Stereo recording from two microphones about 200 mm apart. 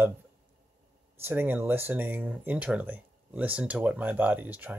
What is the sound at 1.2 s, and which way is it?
Speech, 10° right (ahead or behind).